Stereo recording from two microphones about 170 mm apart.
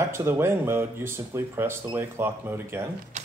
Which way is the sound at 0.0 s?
15° right (ahead or behind).